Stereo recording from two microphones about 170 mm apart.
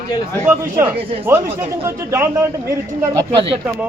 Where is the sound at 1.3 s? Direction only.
15° right (ahead or behind).